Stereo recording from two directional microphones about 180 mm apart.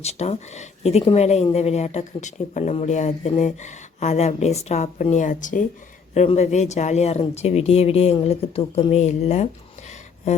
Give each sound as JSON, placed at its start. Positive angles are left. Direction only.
{"t": 0.0, "sound": "speech", "side_deg": 35}